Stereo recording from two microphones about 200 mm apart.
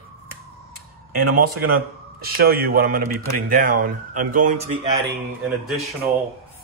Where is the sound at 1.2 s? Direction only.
45° right (ahead or behind).